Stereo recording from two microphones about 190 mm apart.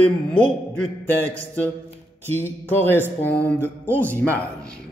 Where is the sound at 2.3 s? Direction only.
10° left (ahead or behind).